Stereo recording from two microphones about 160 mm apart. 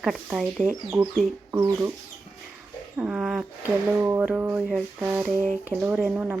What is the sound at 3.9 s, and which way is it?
Speech, 15° right (ahead or behind).